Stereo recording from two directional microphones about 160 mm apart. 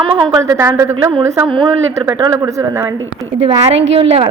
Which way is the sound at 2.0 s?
20° right (ahead or behind).